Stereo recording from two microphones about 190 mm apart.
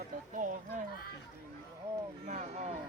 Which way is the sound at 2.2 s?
40° right (ahead or behind).